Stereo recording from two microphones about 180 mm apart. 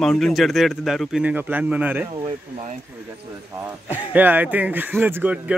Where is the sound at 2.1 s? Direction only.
25° right (ahead or behind).